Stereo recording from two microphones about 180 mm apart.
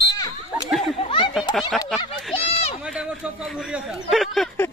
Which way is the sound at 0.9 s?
30° left (ahead or behind).